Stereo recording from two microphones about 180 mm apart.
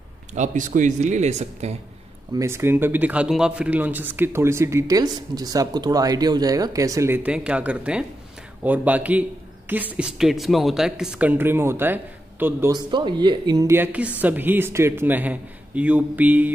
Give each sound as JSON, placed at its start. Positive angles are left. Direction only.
{"t": 0.3, "sound": "speech", "side_deg": -40}
{"t": 2.3, "sound": "speech", "side_deg": -15}
{"t": 12.7, "sound": "speech", "side_deg": -25}